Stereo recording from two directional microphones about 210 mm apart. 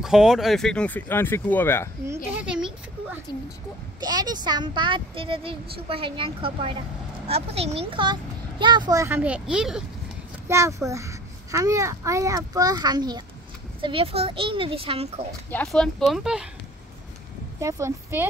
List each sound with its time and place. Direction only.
0.0 s speech: centre (ahead or behind)
2.4 s a sound: 5° right (ahead or behind)
4.0 s speech: 20° right (ahead or behind); by 9.8 s 5° right (ahead or behind)
10.5 s a child's voice: 15° right (ahead or behind); by 15.2 s 30° right (ahead or behind)
15.5 s speech: 5° left (ahead or behind)
17.6 s a child's voice: 15° right (ahead or behind)